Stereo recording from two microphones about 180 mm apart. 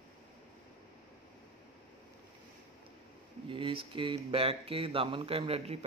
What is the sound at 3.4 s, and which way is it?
Speech, 30° right (ahead or behind).